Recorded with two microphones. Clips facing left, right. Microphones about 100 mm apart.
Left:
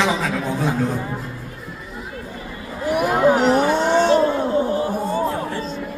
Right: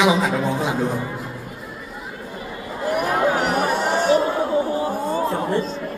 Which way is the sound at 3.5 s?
30° left (ahead or behind).